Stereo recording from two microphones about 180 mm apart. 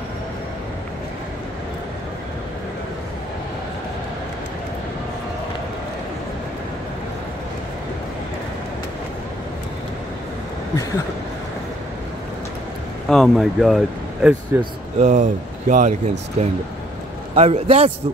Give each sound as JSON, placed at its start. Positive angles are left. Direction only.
{"t": 13.1, "sound": "speech", "side_deg": 0}
{"t": 15.0, "sound": "a man's voice", "side_deg": -40}